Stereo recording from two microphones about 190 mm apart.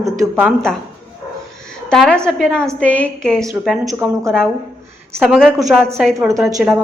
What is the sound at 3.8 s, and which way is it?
Speech, 15° right (ahead or behind).